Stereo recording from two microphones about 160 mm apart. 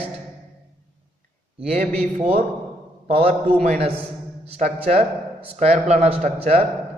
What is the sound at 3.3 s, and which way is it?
A man's voice, 50° right (ahead or behind).